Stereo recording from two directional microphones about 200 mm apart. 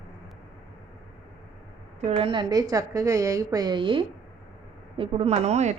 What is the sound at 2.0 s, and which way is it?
A woman's voice, 30° right (ahead or behind).